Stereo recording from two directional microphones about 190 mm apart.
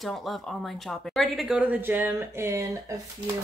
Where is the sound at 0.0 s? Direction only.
Centre (ahead or behind).